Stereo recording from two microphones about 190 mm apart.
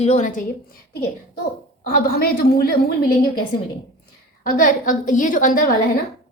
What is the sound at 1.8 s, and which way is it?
A woman's voice, 50° left (ahead or behind).